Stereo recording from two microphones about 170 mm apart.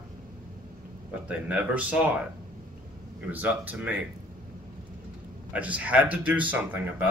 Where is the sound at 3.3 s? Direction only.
10° right (ahead or behind).